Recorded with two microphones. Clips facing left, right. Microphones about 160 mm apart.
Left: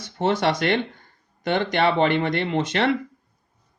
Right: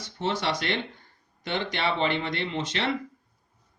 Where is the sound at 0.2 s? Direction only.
55° left (ahead or behind).